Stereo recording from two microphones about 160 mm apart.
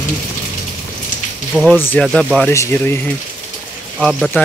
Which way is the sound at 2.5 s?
15° left (ahead or behind).